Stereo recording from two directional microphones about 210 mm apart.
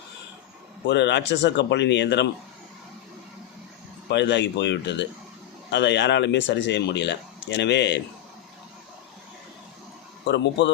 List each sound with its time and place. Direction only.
0.9 s speech: 55° left (ahead or behind)
4.1 s speech: 55° left (ahead or behind)
10.2 s speech: 55° left (ahead or behind)